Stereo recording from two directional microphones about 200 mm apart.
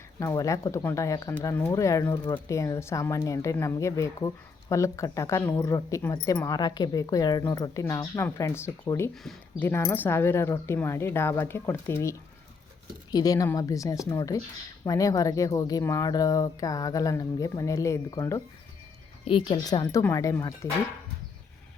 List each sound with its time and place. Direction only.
0.2 s speech: 15° left (ahead or behind)
9.1 s speech: centre (ahead or behind)
19.2 s speech: 30° left (ahead or behind)